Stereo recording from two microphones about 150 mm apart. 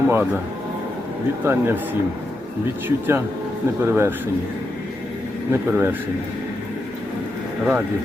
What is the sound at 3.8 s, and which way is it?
Speech, 15° right (ahead or behind).